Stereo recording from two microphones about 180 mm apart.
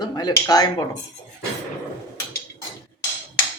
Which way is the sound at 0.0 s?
25° left (ahead or behind).